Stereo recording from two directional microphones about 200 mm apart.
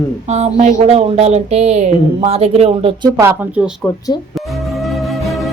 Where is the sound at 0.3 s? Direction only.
30° right (ahead or behind).